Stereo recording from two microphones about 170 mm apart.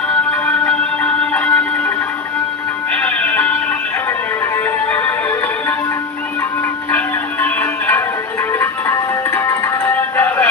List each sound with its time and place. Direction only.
0.4 s music: 10° left (ahead or behind)
2.9 s music: 10° left (ahead or behind)
4.5 s music: 10° left (ahead or behind)
6.9 s music: 10° left (ahead or behind)